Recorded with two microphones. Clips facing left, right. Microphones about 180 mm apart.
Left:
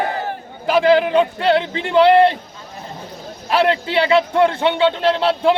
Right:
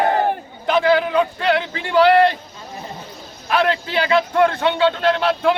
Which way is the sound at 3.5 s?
30° left (ahead or behind).